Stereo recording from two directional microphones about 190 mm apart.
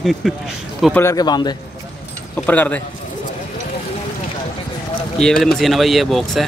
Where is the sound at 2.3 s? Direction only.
10° left (ahead or behind).